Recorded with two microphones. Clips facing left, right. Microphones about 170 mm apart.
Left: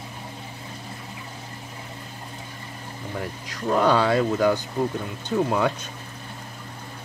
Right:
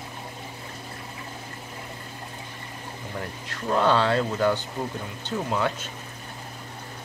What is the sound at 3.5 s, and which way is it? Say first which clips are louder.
Speech: left 2 dB; 10° left (ahead or behind).